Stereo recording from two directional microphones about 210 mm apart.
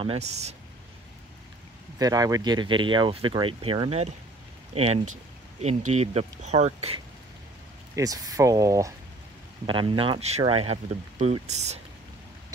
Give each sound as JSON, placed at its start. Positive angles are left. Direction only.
{"t": 0.0, "sound": "speech", "side_deg": -30}
{"t": 2.0, "sound": "speech", "side_deg": -15}
{"t": 7.9, "sound": "speech", "side_deg": -15}